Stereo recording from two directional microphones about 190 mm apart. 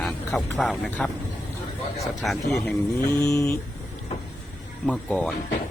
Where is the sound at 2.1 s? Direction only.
Centre (ahead or behind).